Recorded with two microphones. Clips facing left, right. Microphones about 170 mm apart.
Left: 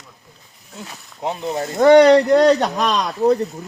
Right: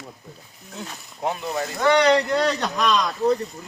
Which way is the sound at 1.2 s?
25° left (ahead or behind).